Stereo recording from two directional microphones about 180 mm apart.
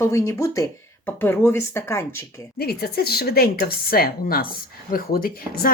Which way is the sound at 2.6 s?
60° left (ahead or behind).